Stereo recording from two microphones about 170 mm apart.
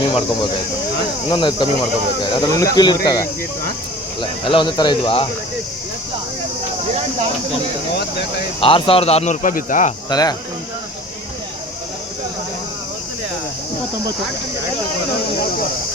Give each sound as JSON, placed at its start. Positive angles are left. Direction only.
{"t": 0.0, "sound": "a sound", "side_deg": 25}
{"t": 1.3, "sound": "speech", "side_deg": 30}
{"t": 7.9, "sound": "speech", "side_deg": 75}
{"t": 8.6, "sound": "speech", "side_deg": 30}
{"t": 10.1, "sound": "speech", "side_deg": 25}